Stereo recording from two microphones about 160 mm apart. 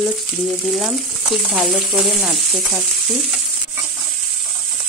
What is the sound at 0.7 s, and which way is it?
Frying, centre (ahead or behind).